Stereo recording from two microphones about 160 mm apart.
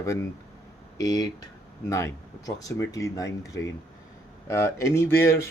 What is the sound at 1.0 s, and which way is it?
Speech, 25° left (ahead or behind).